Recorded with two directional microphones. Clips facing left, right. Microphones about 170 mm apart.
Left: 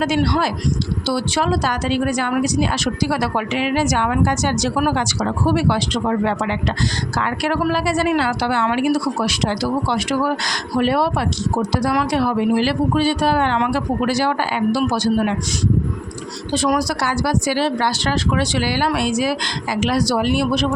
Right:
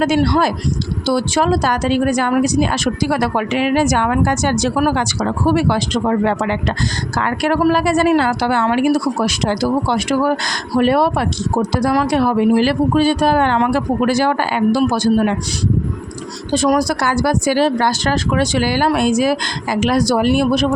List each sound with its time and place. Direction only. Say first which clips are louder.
0.0 s speech: right 4 dB; 50° right (ahead or behind)
16.5 s speech: right 4 dB; 45° right (ahead or behind)